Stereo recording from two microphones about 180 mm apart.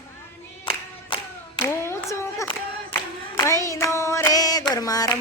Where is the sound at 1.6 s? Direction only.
15° left (ahead or behind).